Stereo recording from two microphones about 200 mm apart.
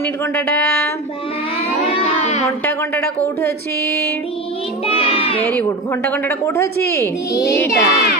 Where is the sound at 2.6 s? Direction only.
10° left (ahead or behind).